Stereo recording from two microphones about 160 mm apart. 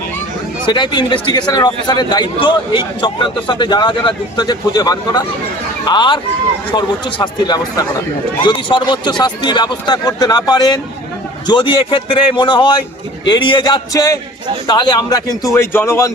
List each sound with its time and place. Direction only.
0.6 s a man's voice: 30° left (ahead or behind)